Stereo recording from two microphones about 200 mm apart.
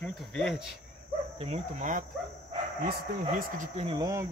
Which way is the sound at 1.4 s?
35° right (ahead or behind).